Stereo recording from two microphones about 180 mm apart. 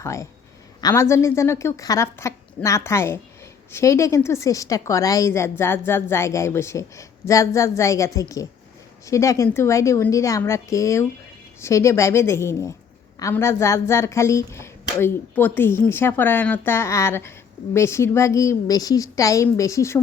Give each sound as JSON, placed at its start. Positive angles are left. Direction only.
{"t": 0.0, "sound": "a woman's voice", "side_deg": 15}